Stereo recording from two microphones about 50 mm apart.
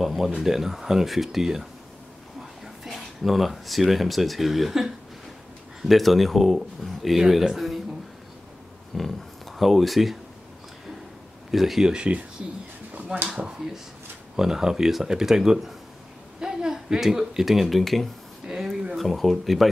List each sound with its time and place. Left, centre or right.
0.0 s speech: centre
2.8 s speech: centre
8.9 s speech: centre
11.5 s speech: centre
12.9 s a sound: right
14.3 s speech: centre
18.5 s a sound: centre
18.9 s speech: centre